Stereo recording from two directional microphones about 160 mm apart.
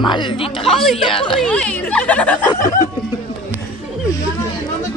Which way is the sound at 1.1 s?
35° left (ahead or behind).